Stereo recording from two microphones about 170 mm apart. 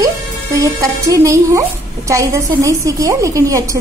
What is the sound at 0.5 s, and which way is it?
A woman's voice, 20° right (ahead or behind).